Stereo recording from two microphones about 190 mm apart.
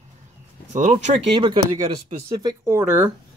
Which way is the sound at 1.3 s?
25° right (ahead or behind).